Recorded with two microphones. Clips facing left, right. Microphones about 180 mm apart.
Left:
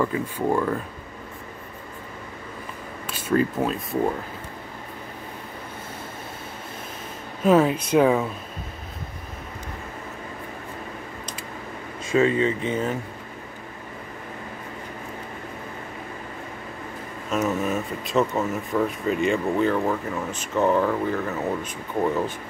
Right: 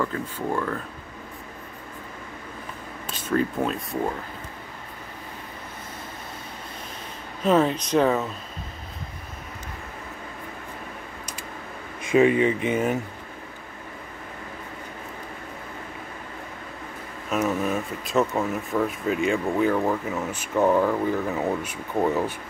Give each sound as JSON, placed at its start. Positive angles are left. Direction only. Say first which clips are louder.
{"t": 0.0, "sound": "speech", "louder": "left 4 dB", "side_deg": 15}
{"t": 3.2, "sound": "speech", "louder": "left 2 dB", "side_deg": 5}
{"t": 7.4, "sound": "speech", "louder": "left 2 dB", "side_deg": 10}
{"t": 12.0, "sound": "speech", "louder": "right 2 dB", "side_deg": -15}
{"t": 17.3, "sound": "speech", "louder": "even", "side_deg": 0}